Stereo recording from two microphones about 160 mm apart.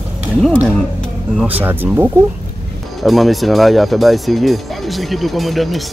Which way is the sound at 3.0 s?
Centre (ahead or behind).